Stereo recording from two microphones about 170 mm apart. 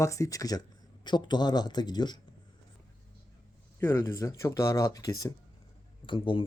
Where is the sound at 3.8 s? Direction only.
15° left (ahead or behind).